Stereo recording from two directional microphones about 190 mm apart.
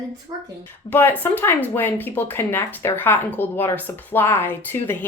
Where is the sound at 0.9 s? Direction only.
10° left (ahead or behind).